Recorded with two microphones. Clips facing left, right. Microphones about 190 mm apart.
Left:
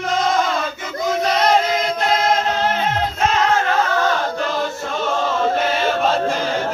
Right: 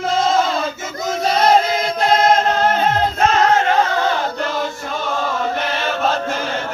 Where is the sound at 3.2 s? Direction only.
45° right (ahead or behind).